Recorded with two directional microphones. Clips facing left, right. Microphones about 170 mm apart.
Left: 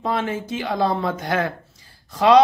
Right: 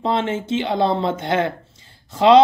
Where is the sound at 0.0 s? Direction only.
25° right (ahead or behind).